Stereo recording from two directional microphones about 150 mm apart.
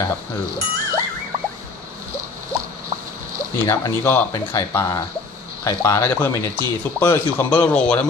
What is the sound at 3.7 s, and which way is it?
Speech, 15° left (ahead or behind).